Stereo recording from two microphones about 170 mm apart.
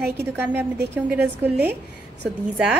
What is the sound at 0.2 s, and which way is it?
A woman's voice, 10° right (ahead or behind).